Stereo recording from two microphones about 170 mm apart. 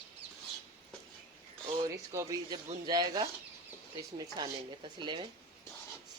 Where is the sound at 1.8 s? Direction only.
20° right (ahead or behind).